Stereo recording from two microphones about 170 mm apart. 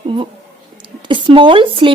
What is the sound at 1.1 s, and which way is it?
Speech, 30° right (ahead or behind).